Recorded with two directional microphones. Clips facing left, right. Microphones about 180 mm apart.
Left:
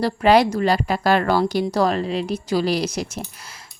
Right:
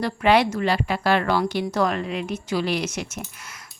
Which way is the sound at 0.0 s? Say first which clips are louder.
Left 3 dB; 35° left (ahead or behind).